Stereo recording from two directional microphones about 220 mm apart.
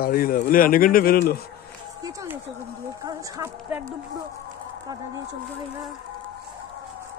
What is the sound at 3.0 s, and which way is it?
Speech, 15° right (ahead or behind).